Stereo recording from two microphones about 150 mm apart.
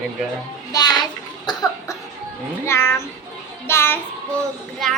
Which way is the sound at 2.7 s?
15° left (ahead or behind).